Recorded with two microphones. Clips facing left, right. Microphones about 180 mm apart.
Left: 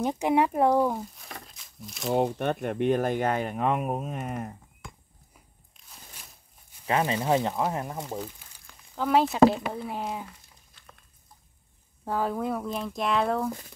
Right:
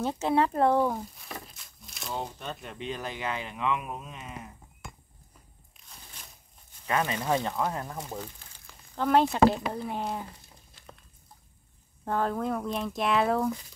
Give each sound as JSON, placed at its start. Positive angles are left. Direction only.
{"t": 0.0, "sound": "speech", "side_deg": 15}
{"t": 2.0, "sound": "speech", "side_deg": 65}
{"t": 6.2, "sound": "a sound", "side_deg": 10}
{"t": 6.9, "sound": "speech", "side_deg": 25}
{"t": 8.2, "sound": "speech", "side_deg": 0}
{"t": 12.0, "sound": "speech", "side_deg": 5}